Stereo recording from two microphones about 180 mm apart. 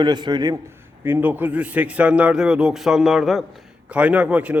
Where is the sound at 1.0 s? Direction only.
10° right (ahead or behind).